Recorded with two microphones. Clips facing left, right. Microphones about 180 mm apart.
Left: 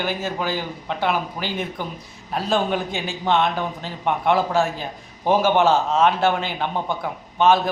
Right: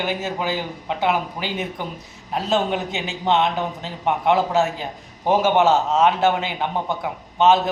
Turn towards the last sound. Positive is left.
turn(degrees=-20)  # may be behind; listen again after turning